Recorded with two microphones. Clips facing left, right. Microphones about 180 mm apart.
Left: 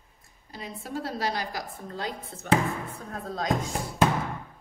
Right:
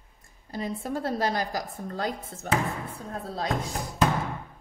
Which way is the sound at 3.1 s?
35° right (ahead or behind).